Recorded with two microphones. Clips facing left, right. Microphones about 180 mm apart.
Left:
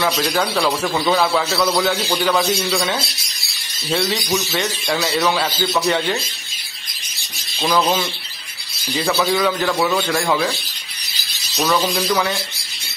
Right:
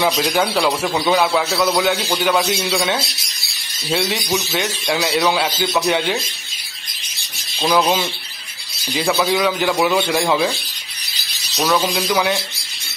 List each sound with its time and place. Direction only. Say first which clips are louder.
0.0 s a man's voice: right 2 dB; 10° right (ahead or behind)
7.5 s a man's voice: right 1 dB; 10° right (ahead or behind)
9.2 s a man's voice: even; 5° right (ahead or behind)
11.5 s a man's voice: right 1 dB; 5° right (ahead or behind)